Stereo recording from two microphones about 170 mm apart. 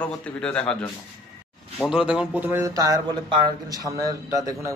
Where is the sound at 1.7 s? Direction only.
5° right (ahead or behind).